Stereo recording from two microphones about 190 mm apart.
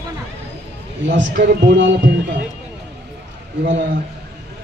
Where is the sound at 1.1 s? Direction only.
70° right (ahead or behind).